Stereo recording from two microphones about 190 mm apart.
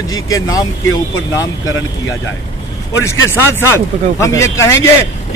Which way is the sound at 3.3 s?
15° left (ahead or behind).